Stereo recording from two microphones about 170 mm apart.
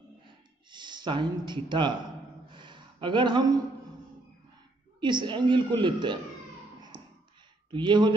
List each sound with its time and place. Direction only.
0.7 s speech: 25° right (ahead or behind)
2.5 s a sound: 25° right (ahead or behind)
5.0 s a woman's voice: 25° right (ahead or behind)
7.7 s a woman's voice: 25° right (ahead or behind)